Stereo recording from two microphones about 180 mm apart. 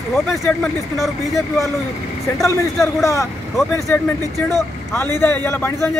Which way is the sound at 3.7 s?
10° left (ahead or behind).